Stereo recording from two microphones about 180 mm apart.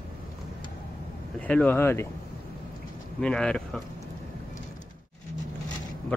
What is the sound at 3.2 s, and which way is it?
Speech, 5° left (ahead or behind).